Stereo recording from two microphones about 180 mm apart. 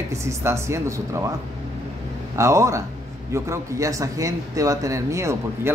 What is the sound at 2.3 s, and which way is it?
Speech, 15° right (ahead or behind).